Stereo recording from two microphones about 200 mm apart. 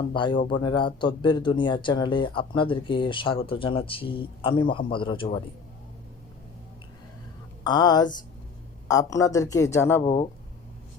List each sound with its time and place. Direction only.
0.1 s speech: 25° left (ahead or behind)
7.6 s speech: 20° left (ahead or behind)
10.0 s speech: 25° left (ahead or behind)